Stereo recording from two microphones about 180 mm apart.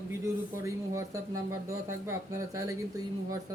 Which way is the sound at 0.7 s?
15° right (ahead or behind).